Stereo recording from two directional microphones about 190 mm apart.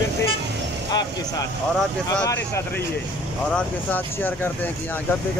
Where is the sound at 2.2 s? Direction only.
15° left (ahead or behind).